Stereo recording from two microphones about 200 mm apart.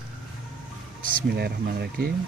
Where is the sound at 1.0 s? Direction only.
55° right (ahead or behind).